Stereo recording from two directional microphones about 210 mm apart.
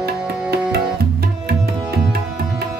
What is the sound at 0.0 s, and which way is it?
Music, 50° right (ahead or behind).